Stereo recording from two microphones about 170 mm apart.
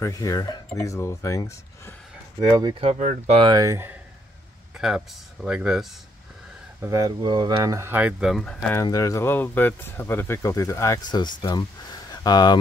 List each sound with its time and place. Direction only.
0.0 s speech: 20° left (ahead or behind)
2.4 s speech: 25° right (ahead or behind)
2.8 s speech: 40° right (ahead or behind)
3.3 s speech: 25° right (ahead or behind)
4.7 s speech: 5° right (ahead or behind)
6.8 s speech: 20° right (ahead or behind); by 8.7 s centre (ahead or behind)
8.8 s speech: 20° left (ahead or behind)